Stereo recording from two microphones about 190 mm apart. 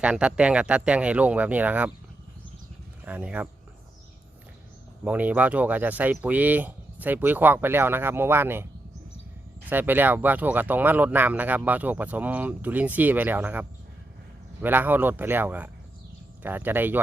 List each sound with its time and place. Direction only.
0.0 s speech: 5° right (ahead or behind)
3.0 s speech: 10° right (ahead or behind)
5.0 s speech: 10° right (ahead or behind)
9.6 s speech: 10° right (ahead or behind)